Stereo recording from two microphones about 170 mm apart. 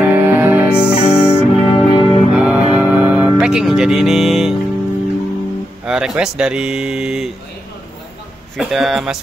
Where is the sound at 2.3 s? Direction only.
5° right (ahead or behind).